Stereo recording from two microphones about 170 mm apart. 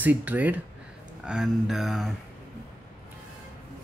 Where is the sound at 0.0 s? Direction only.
10° right (ahead or behind).